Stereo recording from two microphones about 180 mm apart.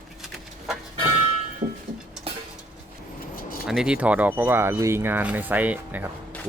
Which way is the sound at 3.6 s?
5° right (ahead or behind).